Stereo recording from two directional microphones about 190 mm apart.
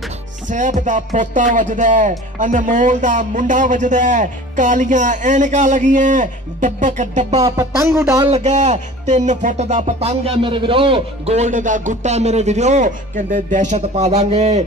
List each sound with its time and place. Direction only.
0.5 s speech: 40° right (ahead or behind)
7.4 s speech: 15° right (ahead or behind)
8.3 s speech: 35° right (ahead or behind)